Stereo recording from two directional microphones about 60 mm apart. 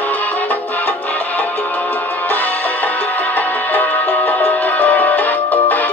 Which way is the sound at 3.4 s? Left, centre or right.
Left.